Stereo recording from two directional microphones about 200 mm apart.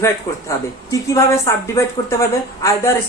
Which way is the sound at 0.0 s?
15° left (ahead or behind).